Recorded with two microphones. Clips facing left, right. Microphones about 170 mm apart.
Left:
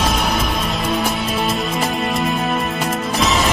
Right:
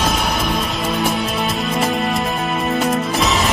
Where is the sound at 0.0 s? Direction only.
Centre (ahead or behind).